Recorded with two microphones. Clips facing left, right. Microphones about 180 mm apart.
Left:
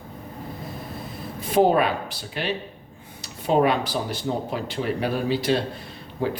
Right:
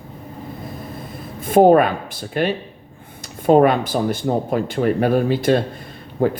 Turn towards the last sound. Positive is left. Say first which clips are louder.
# right 7 dB
turn(degrees=-50)  # may be behind; listen again after turning